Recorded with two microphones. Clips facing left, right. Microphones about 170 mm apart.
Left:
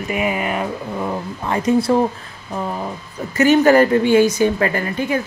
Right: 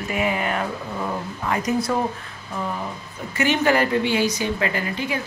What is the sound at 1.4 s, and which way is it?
Speech, 30° left (ahead or behind).